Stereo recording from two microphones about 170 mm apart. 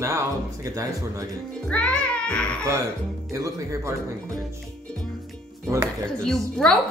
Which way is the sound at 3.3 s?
20° right (ahead or behind).